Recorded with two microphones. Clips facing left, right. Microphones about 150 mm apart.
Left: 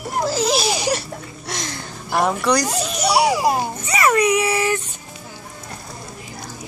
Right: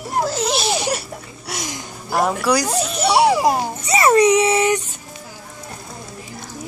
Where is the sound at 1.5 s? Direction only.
10° right (ahead or behind).